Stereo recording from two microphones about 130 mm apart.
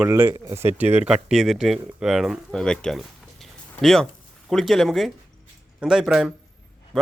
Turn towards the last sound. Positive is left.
turn(degrees=-5)  # may be behind; listen again after turning